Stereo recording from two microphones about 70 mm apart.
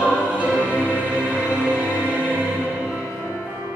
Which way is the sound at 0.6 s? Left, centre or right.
Centre.